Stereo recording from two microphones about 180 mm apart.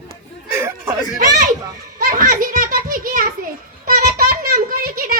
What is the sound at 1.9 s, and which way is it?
Children playing, 50° right (ahead or behind).